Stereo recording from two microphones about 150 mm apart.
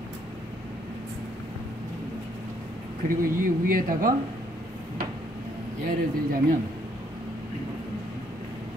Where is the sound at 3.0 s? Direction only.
70° right (ahead or behind).